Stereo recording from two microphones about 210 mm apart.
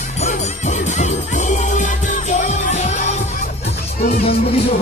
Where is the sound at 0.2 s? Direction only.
35° left (ahead or behind).